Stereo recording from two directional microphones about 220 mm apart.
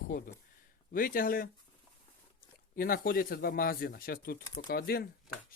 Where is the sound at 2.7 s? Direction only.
40° left (ahead or behind).